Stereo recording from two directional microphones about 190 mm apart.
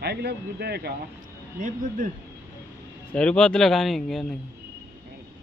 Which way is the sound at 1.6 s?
45° right (ahead or behind).